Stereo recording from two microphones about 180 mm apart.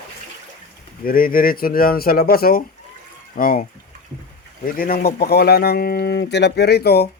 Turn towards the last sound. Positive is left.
turn(degrees=60)  # may be behind; listen again after turning